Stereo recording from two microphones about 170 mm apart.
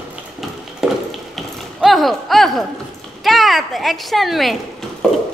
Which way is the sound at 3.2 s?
Centre (ahead or behind).